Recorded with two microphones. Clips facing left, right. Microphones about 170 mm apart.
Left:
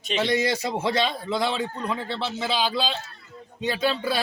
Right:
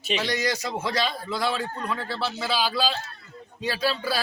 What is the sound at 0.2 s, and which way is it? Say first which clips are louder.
A man's voice: left 4 dB; 25° left (ahead or behind).